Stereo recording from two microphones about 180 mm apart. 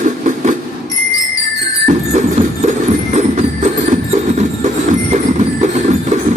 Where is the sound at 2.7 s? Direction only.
45° right (ahead or behind).